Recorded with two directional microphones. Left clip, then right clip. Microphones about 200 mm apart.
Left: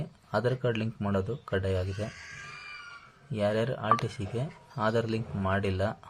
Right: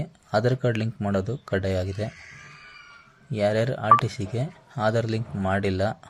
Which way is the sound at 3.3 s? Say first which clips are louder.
Right 5 dB; 20° right (ahead or behind).